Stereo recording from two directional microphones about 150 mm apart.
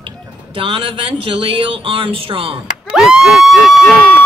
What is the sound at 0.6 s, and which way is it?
Speech, 35° right (ahead or behind).